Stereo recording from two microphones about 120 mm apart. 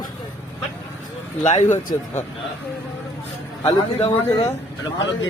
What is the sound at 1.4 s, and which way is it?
Speech, 80° left.